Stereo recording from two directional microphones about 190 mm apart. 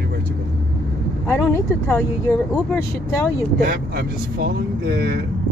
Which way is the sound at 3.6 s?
55° right (ahead or behind).